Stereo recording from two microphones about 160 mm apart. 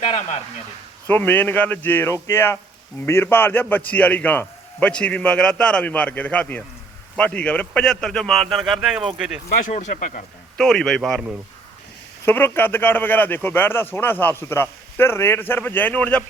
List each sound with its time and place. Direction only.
0.0 s speech: 45° left (ahead or behind)
1.0 s a man's voice: 10° left (ahead or behind); by 9.4 s 5° right (ahead or behind)
9.6 s speech: 50° left (ahead or behind)
10.6 s a man's voice: 5° left (ahead or behind)
12.2 s speech: 15° left (ahead or behind)